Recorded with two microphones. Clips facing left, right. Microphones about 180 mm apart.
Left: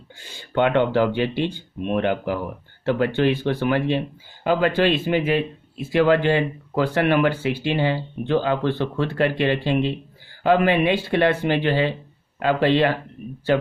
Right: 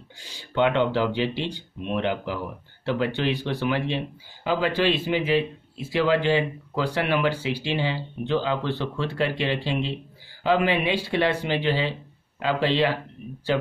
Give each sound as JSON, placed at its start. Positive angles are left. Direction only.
{"t": 0.2, "sound": "a man's voice", "side_deg": 55}